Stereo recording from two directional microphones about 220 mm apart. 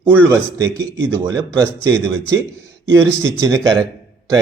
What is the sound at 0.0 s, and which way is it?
Speech, 10° right (ahead or behind).